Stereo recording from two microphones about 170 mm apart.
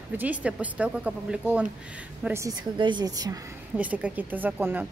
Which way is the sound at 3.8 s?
10° right (ahead or behind).